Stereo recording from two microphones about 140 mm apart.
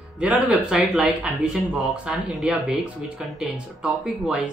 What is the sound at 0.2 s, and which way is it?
A man's voice, 10° right (ahead or behind).